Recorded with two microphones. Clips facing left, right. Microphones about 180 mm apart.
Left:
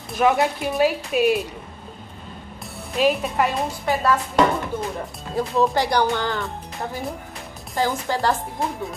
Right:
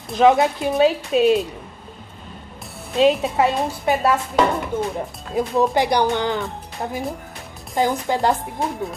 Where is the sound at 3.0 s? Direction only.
25° right (ahead or behind).